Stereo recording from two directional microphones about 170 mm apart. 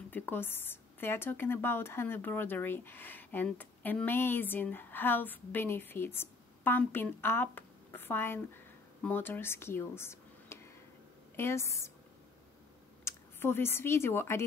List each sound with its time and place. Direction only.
0.1 s speech: 10° left (ahead or behind)
13.0 s speech: 15° left (ahead or behind)